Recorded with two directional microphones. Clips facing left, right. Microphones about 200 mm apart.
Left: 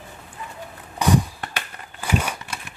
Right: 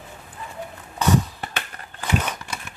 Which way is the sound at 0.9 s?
15° left (ahead or behind).